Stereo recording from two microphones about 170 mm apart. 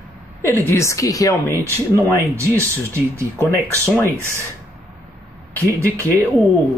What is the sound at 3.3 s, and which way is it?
Speech, 10° left (ahead or behind).